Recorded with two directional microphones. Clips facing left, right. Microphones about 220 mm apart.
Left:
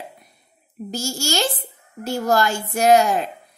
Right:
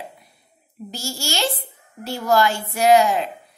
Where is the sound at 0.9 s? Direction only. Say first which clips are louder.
Left 4 dB; 45° left (ahead or behind).